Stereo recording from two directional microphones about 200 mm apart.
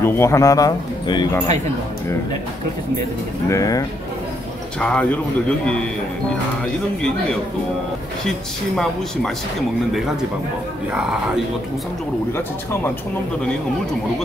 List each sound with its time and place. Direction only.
0.0 s speech: 10° left (ahead or behind)
3.4 s speech: 15° left (ahead or behind)
4.7 s speech: 5° left (ahead or behind)
8.3 s speech: centre (ahead or behind)